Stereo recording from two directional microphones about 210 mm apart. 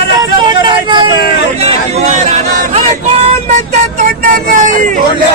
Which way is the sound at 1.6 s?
30° right (ahead or behind).